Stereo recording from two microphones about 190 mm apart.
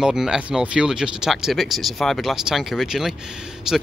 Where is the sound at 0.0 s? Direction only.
5° right (ahead or behind).